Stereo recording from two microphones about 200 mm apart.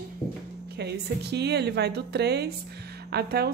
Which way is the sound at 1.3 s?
55° right (ahead or behind).